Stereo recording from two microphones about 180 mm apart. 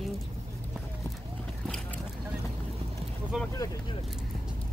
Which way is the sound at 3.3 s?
5° right (ahead or behind).